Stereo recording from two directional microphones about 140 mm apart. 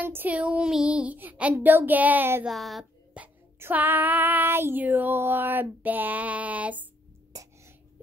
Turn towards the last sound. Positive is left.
turn(degrees=-25)  # may be behind; listen again after turning